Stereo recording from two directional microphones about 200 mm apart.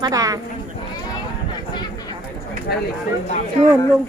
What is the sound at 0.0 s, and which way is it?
Speech, 15° right (ahead or behind).